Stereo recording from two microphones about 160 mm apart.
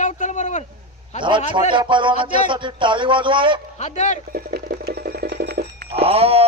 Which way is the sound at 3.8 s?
45° left (ahead or behind).